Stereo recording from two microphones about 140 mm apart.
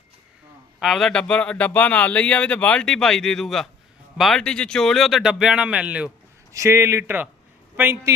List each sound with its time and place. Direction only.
0.8 s speech: centre (ahead or behind)
6.5 s a man's voice: 20° right (ahead or behind)